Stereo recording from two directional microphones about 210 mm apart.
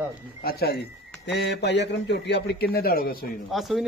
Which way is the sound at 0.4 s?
45° left (ahead or behind).